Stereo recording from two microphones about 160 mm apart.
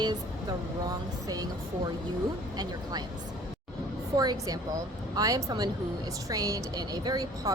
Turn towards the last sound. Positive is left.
turn(degrees=-25)  # may be behind; listen again after turning